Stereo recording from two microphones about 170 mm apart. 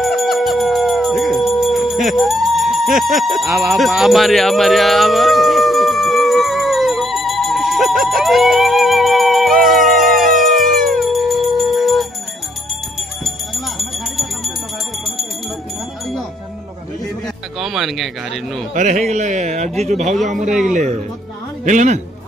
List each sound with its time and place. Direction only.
0.0 s music: centre (ahead or behind)
3.0 s jingle bell: centre (ahead or behind)
9.6 s music: centre (ahead or behind)
13.7 s jingle bell: centre (ahead or behind)
17.6 s speech: centre (ahead or behind)
18.8 s speech: 45° right (ahead or behind)